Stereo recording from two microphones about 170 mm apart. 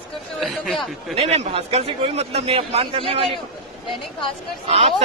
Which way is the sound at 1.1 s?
40° right (ahead or behind).